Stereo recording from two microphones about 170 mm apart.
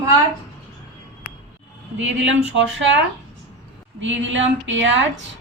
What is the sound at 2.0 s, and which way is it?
Speech, 90° right.